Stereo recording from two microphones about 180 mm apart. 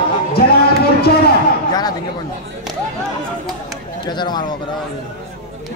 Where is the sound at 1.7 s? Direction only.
20° left (ahead or behind).